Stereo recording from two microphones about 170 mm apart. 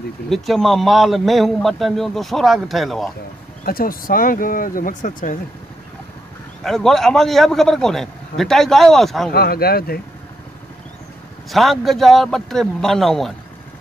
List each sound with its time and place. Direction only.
0.3 s a man's voice: centre (ahead or behind)
3.6 s speech: 60° left (ahead or behind)
6.6 s a man's voice: centre (ahead or behind)
9.3 s speech: 65° left (ahead or behind)
11.5 s a man's voice: centre (ahead or behind)